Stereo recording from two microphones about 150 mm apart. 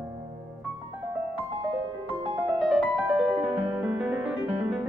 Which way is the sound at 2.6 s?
Centre (ahead or behind).